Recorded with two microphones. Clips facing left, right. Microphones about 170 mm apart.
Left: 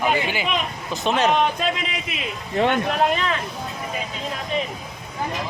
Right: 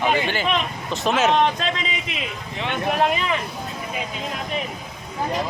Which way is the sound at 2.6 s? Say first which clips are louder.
Left 9 dB; 45° left (ahead or behind).